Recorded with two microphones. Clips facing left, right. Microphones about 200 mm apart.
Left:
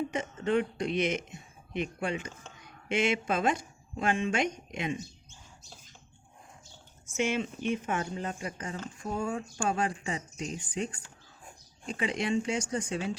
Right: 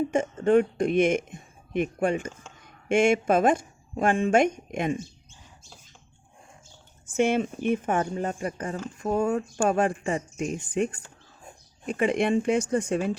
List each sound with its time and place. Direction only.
0.1 s speech: 50° right (ahead or behind)
7.2 s speech: 55° right (ahead or behind)